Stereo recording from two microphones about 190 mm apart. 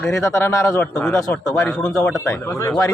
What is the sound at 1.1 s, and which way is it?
Speech, 15° left (ahead or behind).